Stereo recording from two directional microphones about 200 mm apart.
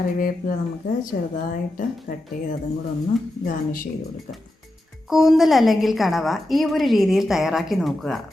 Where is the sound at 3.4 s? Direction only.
45° left (ahead or behind).